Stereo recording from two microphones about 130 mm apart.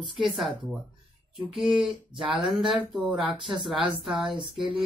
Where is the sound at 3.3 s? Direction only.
40° right (ahead or behind).